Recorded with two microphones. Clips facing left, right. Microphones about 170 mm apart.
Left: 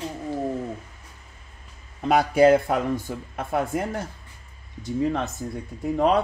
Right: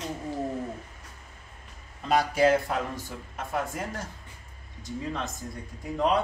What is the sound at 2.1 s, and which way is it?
Speech, 60° left (ahead or behind).